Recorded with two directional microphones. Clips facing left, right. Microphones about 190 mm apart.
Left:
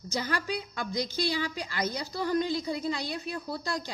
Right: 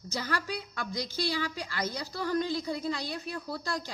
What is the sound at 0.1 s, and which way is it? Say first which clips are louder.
A woman's voice: left 2 dB; 20° left (ahead or behind).